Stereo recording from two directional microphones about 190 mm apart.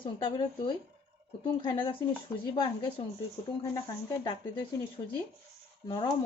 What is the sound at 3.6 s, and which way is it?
Speech, 15° left (ahead or behind).